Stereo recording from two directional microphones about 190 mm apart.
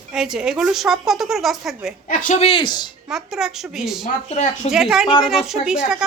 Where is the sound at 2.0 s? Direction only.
40° left (ahead or behind); by 2.9 s 25° left (ahead or behind).